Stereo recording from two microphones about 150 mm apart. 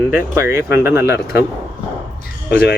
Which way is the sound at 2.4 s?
90° left.